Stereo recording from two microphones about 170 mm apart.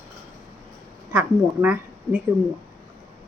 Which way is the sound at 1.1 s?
10° right (ahead or behind).